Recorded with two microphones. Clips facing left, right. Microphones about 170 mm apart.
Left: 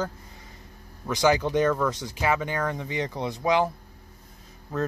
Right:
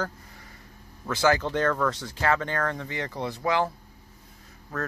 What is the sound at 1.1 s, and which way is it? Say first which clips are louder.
Speech: left 2 dB; 15° left (ahead or behind).